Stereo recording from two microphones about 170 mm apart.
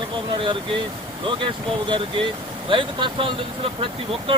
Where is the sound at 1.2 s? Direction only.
30° right (ahead or behind).